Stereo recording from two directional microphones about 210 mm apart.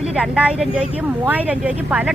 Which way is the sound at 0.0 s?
5° right (ahead or behind).